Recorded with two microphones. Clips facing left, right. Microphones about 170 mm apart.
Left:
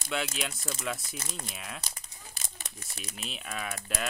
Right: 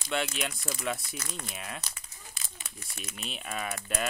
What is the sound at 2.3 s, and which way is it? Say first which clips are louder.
Crumpling: left 2 dB; 40° left (ahead or behind).